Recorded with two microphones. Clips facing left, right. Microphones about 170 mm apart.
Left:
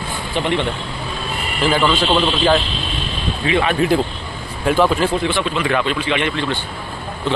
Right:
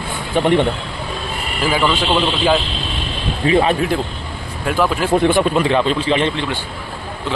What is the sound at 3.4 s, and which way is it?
Speech, 35° right (ahead or behind).